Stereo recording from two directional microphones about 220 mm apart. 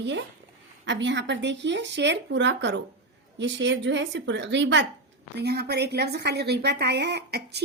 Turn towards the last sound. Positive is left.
turn(degrees=-50)  # may be behind; listen again after turning